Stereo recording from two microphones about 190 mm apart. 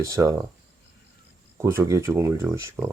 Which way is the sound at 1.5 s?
15° right (ahead or behind).